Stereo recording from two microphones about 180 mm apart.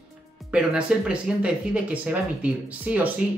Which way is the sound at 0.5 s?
5° right (ahead or behind).